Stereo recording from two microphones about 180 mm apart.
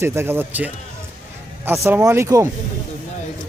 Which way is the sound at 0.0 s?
15° right (ahead or behind).